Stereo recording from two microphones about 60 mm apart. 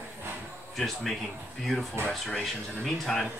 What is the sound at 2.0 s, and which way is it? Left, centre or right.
Speech, right.